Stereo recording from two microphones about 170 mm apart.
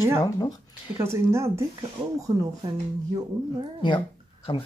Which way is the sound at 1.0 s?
15° right (ahead or behind).